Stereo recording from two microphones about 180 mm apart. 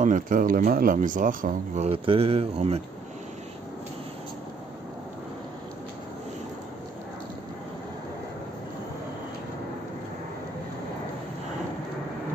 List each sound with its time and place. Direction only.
0.0 s speech: 45° right (ahead or behind)
1.9 s speech: 30° right (ahead or behind)